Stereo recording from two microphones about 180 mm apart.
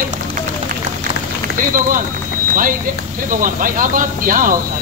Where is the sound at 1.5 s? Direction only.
50° right (ahead or behind).